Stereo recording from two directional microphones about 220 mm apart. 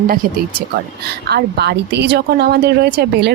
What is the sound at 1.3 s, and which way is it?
Speech, 50° right (ahead or behind).